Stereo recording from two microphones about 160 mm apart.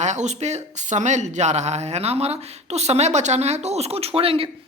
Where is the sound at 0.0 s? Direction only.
45° right (ahead or behind).